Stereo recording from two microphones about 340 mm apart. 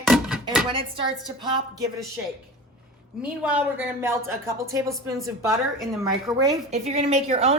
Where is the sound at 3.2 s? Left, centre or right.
Centre.